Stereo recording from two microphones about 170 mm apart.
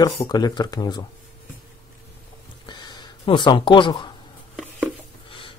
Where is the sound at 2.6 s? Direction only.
25° left (ahead or behind).